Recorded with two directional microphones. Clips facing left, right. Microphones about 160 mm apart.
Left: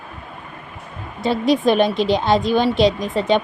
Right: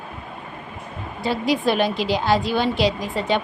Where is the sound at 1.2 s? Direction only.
20° left (ahead or behind).